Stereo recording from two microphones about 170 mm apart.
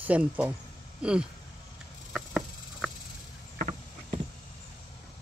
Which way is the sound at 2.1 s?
Centre (ahead or behind).